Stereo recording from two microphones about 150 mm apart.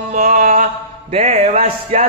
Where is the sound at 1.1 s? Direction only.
45° right (ahead or behind).